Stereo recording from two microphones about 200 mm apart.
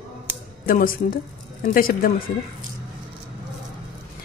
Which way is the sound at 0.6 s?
45° left (ahead or behind).